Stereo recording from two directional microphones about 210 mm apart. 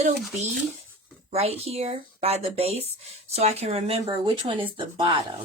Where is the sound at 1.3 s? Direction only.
30° right (ahead or behind).